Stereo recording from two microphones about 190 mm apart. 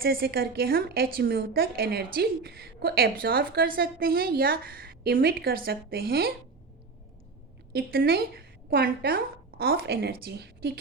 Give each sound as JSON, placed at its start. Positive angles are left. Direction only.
{"t": 0.0, "sound": "a woman's voice", "side_deg": -55}
{"t": 7.7, "sound": "a woman's voice", "side_deg": -50}